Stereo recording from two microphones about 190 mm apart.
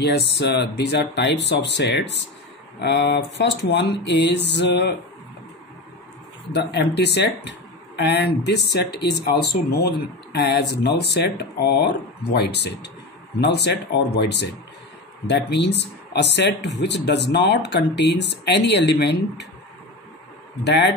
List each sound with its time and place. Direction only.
0.0 s speech: 60° left (ahead or behind)
6.5 s speech: 65° left (ahead or behind)
20.6 s speech: 65° left (ahead or behind)